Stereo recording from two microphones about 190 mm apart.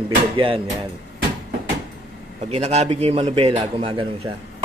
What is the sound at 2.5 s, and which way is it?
Speech, 35° right (ahead or behind).